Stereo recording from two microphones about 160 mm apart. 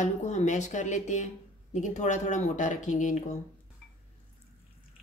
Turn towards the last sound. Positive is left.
turn(degrees=50)  # may be behind; listen again after turning